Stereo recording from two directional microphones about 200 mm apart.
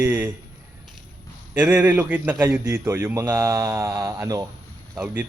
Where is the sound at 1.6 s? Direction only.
5° right (ahead or behind).